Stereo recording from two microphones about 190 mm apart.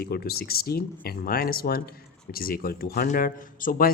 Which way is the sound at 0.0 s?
55° left (ahead or behind).